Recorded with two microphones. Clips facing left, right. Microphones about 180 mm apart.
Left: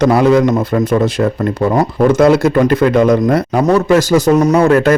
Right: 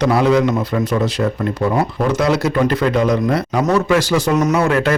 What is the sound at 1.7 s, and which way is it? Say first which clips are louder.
A man's voice: left 6 dB; 50° left (ahead or behind).